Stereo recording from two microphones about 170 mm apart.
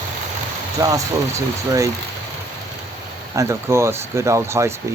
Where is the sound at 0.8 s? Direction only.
20° right (ahead or behind).